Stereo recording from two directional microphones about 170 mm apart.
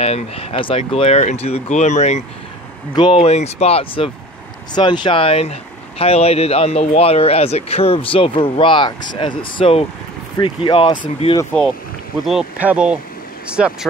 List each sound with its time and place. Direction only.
0.0 s speech: 35° left (ahead or behind)
2.9 s speech: 30° left (ahead or behind)
12.3 s speech: 5° right (ahead or behind)